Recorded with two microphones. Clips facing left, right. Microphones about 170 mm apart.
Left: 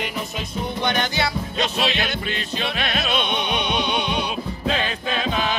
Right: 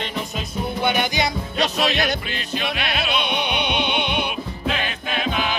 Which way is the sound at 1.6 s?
40° right (ahead or behind).